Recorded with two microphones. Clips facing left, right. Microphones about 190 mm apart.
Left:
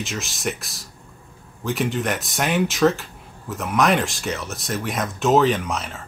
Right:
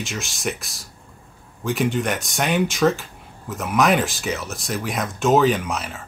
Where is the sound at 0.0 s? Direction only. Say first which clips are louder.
Even; centre (ahead or behind).